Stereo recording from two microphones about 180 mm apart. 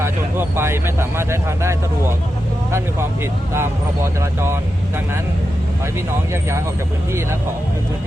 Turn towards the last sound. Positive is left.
turn(degrees=-15)  # may be behind; listen again after turning